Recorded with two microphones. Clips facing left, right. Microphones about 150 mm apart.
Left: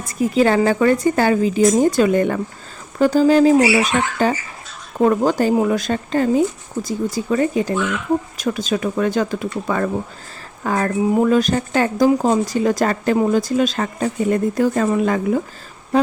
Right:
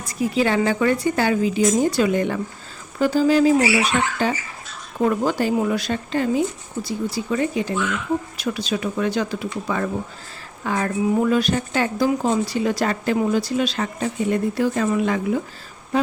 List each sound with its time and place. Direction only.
0.0 s speech: 50° left (ahead or behind)